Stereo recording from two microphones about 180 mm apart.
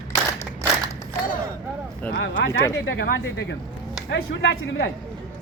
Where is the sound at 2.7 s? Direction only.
80° left.